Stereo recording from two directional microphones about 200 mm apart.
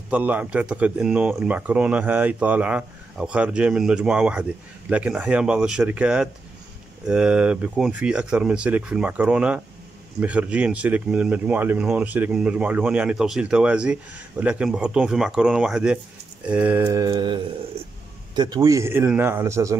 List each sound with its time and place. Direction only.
0.1 s speech: 5° right (ahead or behind)
17.1 s a sound: 25° right (ahead or behind)
18.3 s speech: 20° right (ahead or behind)